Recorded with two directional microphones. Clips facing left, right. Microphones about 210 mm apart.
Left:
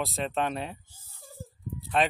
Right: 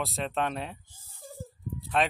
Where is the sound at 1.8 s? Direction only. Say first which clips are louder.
Left 1 dB; centre (ahead or behind).